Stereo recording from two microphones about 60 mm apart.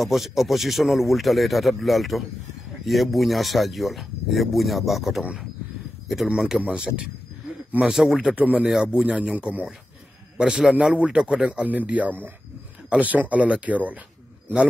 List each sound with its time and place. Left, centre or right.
0.0 s speech: centre
6.2 s a man's voice: centre
7.9 s a man's voice: centre
8.4 s a man's voice: right
10.3 s a man's voice: centre